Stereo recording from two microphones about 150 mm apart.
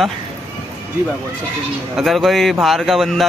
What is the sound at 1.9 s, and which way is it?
A man's voice, centre (ahead or behind).